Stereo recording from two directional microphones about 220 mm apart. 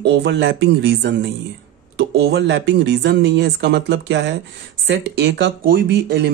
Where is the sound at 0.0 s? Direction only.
55° right (ahead or behind).